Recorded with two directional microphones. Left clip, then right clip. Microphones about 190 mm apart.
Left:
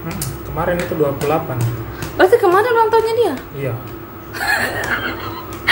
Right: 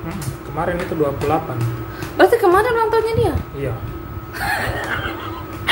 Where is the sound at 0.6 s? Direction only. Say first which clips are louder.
Left 2 dB; 10° right (ahead or behind).